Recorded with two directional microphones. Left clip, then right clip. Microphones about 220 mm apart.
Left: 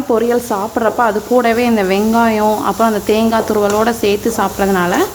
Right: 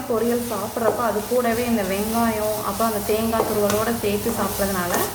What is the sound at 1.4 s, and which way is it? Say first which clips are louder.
Speech: left 10 dB; 50° left (ahead or behind).